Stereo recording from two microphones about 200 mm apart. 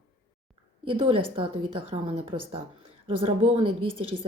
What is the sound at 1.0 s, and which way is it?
Speech, 25° right (ahead or behind).